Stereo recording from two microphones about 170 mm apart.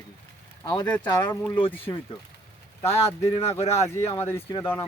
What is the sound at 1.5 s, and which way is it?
Speech, 30° left (ahead or behind).